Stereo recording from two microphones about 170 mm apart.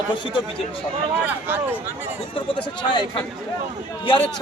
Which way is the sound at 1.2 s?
10° right (ahead or behind).